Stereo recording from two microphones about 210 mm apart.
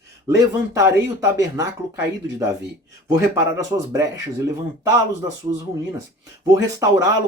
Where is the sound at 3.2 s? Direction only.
15° right (ahead or behind).